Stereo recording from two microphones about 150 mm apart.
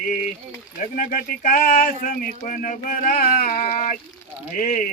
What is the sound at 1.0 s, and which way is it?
Speech, 65° left (ahead or behind).